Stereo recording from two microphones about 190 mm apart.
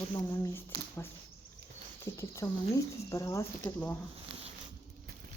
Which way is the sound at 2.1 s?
15° left (ahead or behind).